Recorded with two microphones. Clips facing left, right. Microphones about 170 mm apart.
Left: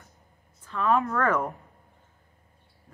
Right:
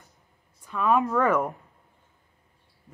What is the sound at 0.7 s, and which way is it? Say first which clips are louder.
Speech: right 1 dB; 15° right (ahead or behind).